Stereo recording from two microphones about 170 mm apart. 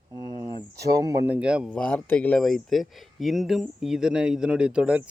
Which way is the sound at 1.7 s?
5° left (ahead or behind).